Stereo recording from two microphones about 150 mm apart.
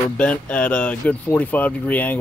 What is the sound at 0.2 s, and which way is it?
Speech, 10° left (ahead or behind).